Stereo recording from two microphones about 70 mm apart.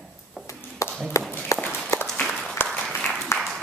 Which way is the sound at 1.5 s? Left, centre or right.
Left.